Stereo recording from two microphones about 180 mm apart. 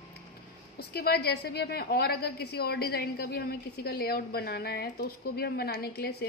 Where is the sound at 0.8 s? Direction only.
60° left (ahead or behind).